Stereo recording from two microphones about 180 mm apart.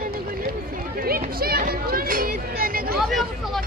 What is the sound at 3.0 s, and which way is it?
Vehicle, centre (ahead or behind).